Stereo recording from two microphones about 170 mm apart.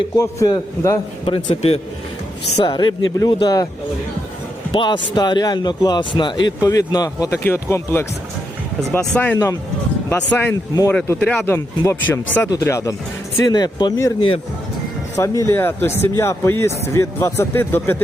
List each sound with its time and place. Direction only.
0.2 s speech: 20° left (ahead or behind)
1.2 s a man's voice: 30° left (ahead or behind)
4.7 s speech: 25° left (ahead or behind)
15.1 s speech: 15° left (ahead or behind)